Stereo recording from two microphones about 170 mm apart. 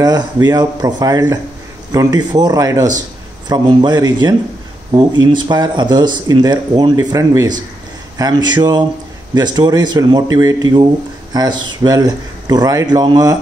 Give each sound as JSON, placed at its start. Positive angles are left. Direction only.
{"t": 0.0, "sound": "speech", "side_deg": -25}